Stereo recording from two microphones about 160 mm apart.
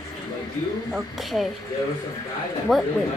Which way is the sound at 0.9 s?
Centre (ahead or behind).